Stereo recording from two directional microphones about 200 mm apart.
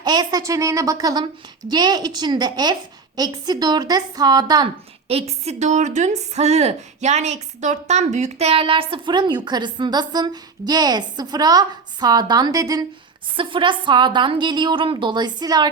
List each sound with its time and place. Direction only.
0.0 s a woman's voice: 20° right (ahead or behind)